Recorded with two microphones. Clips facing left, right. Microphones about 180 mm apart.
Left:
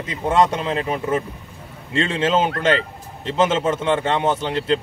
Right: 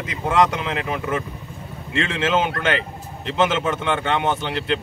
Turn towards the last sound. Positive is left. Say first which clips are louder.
# left 3 dB
turn(degrees=30)  # may be behind; listen again after turning